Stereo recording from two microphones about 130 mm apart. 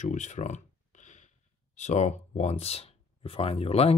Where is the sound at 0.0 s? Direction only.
70° left (ahead or behind).